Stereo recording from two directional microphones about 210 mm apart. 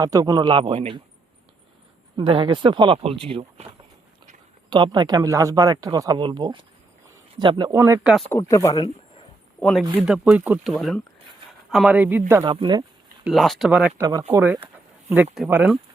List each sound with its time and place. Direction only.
0.0 s speech: 15° right (ahead or behind)
2.1 s speech: 25° right (ahead or behind)
4.7 s speech: 20° right (ahead or behind)
7.8 s speech: 10° right (ahead or behind)
8.3 s speech: 15° left (ahead or behind)
9.6 s speech: 5° left (ahead or behind)
9.9 s speech: 5° right (ahead or behind)
12.3 s speech: 20° right (ahead or behind)
13.2 s speech: centre (ahead or behind)